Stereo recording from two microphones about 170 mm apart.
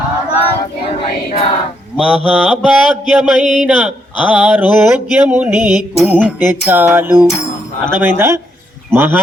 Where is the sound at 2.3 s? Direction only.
5° right (ahead or behind).